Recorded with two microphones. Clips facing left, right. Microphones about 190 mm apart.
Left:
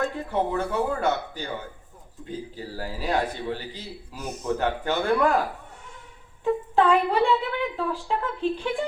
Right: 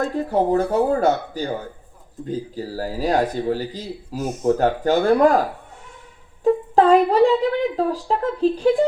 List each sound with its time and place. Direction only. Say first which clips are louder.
0.0 s speech: right 6 dB; 40° right (ahead or behind)